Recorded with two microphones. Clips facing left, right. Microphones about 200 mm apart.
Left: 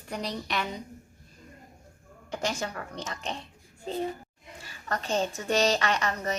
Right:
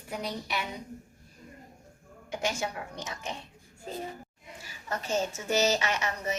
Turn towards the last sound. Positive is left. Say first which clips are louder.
# left 3 dB
turn(degrees=-10)  # may be behind; listen again after turning